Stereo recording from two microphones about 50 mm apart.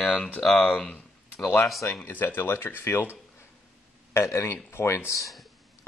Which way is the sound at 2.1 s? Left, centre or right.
Left.